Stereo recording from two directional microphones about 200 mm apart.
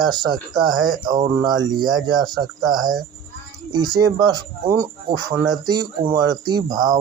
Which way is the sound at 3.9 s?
20° right (ahead or behind).